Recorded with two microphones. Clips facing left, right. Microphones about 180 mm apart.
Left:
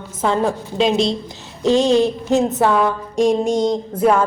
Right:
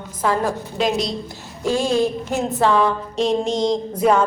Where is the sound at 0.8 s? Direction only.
25° left (ahead or behind).